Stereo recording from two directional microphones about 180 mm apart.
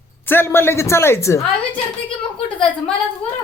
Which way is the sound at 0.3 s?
10° left (ahead or behind).